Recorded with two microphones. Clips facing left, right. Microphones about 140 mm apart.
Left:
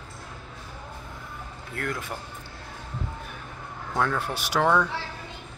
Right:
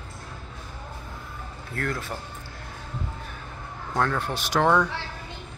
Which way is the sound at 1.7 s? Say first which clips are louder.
Right 2 dB; 15° left (ahead or behind).